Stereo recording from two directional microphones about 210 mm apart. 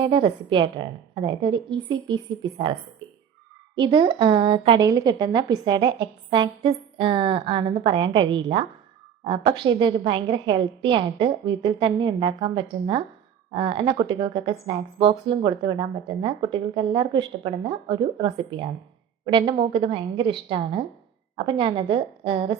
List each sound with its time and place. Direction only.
0.0 s speech: 25° right (ahead or behind)
3.8 s speech: 25° right (ahead or behind)